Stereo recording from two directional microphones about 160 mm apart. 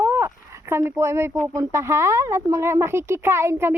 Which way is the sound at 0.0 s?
15° right (ahead or behind).